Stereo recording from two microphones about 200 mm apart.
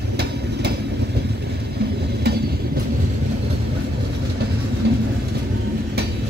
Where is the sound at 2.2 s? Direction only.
55° right (ahead or behind).